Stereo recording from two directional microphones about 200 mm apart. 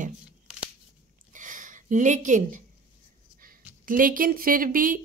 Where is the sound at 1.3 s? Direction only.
40° right (ahead or behind).